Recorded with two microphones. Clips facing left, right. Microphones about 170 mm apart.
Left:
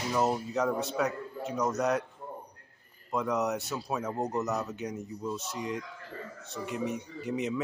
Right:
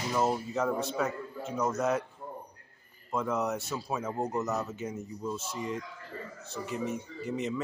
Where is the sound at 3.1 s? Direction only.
Centre (ahead or behind).